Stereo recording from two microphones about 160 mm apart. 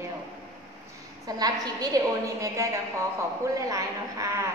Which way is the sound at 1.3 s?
25° right (ahead or behind).